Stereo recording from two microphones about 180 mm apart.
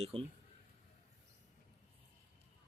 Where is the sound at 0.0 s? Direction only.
30° right (ahead or behind).